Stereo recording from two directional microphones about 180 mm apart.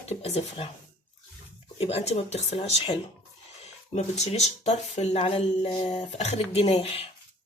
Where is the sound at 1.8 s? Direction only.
35° left (ahead or behind).